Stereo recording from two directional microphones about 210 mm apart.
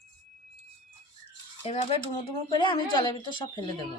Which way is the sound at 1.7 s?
30° left (ahead or behind).